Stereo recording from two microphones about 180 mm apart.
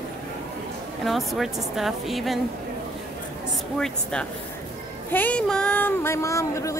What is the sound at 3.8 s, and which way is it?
Speech, 5° left (ahead or behind).